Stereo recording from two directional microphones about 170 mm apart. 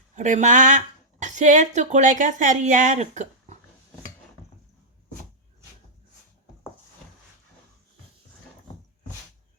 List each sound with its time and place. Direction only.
0.2 s speech: 45° right (ahead or behind)